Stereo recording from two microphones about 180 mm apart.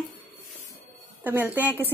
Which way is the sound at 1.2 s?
10° right (ahead or behind).